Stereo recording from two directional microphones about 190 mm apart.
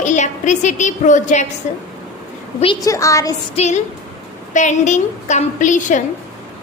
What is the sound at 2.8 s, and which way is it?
Speech, 15° left (ahead or behind).